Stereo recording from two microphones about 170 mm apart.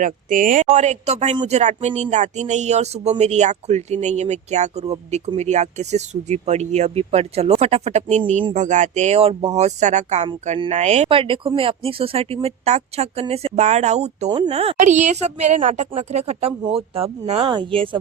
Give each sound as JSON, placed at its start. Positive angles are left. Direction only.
{"t": 0.0, "sound": "speech", "side_deg": -50}
{"t": 14.3, "sound": "speech", "side_deg": -25}